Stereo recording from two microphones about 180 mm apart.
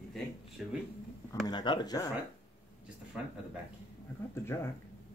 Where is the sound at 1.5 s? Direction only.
25° left (ahead or behind).